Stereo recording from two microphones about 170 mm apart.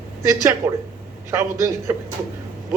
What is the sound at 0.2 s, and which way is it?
A man's voice, 15° right (ahead or behind).